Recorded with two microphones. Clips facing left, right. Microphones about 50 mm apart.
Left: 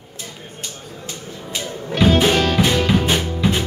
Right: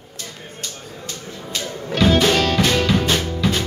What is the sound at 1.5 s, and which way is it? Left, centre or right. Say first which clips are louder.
Music: even; centre.